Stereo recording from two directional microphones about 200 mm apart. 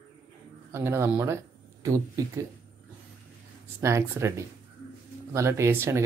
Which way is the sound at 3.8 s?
15° right (ahead or behind).